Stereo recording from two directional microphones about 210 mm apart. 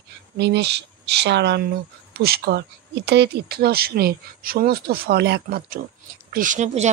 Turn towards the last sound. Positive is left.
turn(degrees=-35)  # may be behind; listen again after turning